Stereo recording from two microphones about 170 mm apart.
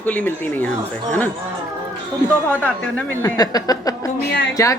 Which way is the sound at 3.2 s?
20° left (ahead or behind).